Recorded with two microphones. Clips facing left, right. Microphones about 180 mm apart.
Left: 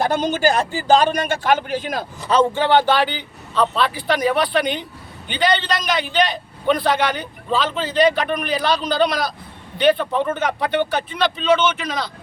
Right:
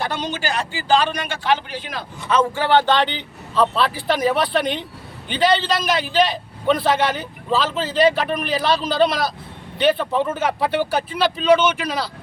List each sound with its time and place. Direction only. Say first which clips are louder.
0.0 s a man's voice: left 7 dB; 45° left (ahead or behind)
2.6 s a man's voice: left 1 dB; 15° left (ahead or behind); by 12.1 s 10° right (ahead or behind)